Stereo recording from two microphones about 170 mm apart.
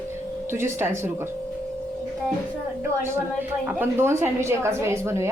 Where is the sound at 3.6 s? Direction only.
15° right (ahead or behind).